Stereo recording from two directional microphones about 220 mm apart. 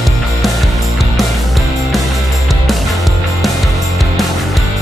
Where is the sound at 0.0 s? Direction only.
Centre (ahead or behind).